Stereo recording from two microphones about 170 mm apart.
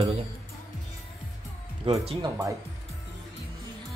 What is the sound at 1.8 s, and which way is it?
Speech, 35° right (ahead or behind).